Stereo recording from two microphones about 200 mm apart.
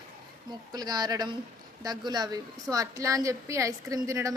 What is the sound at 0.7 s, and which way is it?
A woman's voice, 20° right (ahead or behind).